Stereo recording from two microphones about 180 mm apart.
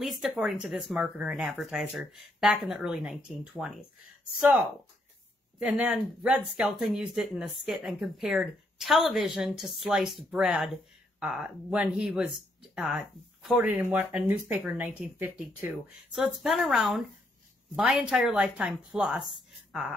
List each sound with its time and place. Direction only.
0.0 s speech: centre (ahead or behind)